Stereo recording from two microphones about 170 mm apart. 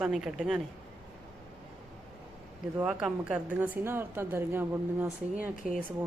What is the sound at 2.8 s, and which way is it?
A woman's voice, 5° right (ahead or behind).